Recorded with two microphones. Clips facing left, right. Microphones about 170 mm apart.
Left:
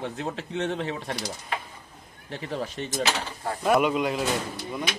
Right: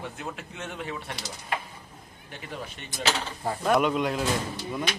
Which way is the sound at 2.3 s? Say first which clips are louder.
Left 7 dB; 35° left (ahead or behind).